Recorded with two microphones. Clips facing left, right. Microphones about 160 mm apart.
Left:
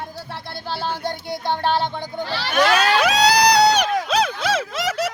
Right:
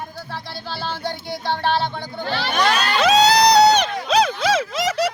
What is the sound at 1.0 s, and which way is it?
Music, 50° left (ahead or behind).